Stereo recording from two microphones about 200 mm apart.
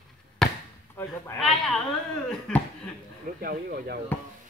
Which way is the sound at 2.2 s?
5° left (ahead or behind).